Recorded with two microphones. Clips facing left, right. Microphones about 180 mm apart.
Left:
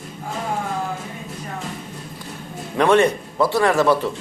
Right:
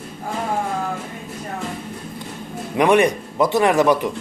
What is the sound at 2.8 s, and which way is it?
Speech, 15° right (ahead or behind).